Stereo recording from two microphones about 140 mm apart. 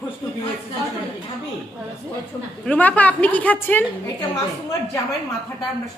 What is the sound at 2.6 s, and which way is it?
A woman's voice, 10° left (ahead or behind).